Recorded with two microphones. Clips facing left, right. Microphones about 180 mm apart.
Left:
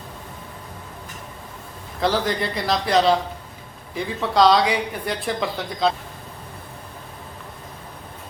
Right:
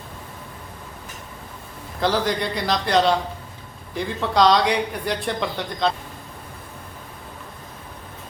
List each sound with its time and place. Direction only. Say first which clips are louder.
2.0 s speech: even; centre (ahead or behind)